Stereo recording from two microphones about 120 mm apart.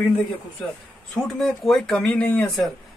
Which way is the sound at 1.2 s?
Centre (ahead or behind).